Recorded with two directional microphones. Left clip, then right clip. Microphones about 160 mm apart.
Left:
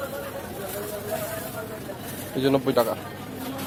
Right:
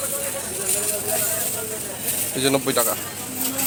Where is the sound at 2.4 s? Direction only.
5° left (ahead or behind).